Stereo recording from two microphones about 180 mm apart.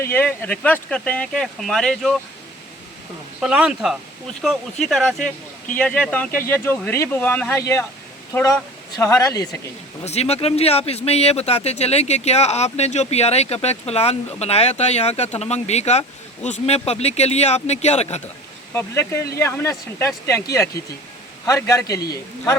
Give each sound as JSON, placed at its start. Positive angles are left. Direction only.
{"t": 0.0, "sound": "speech", "side_deg": 10}
{"t": 3.4, "sound": "a man's voice", "side_deg": -5}
{"t": 10.0, "sound": "speech", "side_deg": 35}
{"t": 18.7, "sound": "a man's voice", "side_deg": 15}